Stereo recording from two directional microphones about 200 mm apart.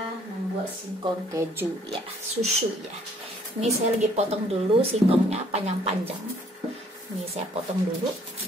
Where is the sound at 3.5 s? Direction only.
30° right (ahead or behind).